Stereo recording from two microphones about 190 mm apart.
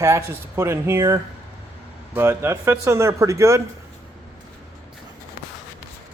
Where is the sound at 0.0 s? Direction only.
15° right (ahead or behind).